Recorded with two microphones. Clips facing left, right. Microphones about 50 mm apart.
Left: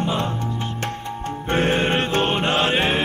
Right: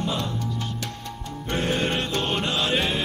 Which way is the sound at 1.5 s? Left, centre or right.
Left.